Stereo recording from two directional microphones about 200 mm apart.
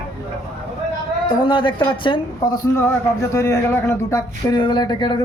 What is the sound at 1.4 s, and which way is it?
Speech, 25° left (ahead or behind).